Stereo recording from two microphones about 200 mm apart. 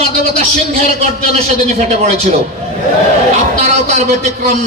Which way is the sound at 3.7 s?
35° right (ahead or behind).